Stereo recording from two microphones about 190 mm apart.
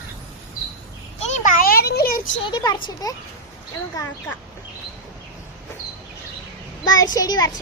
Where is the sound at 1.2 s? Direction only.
40° left (ahead or behind).